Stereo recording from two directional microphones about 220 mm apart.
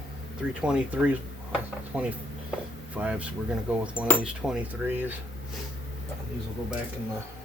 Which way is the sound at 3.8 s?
5° right (ahead or behind).